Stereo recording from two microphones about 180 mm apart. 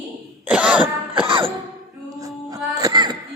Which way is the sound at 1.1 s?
30° right (ahead or behind).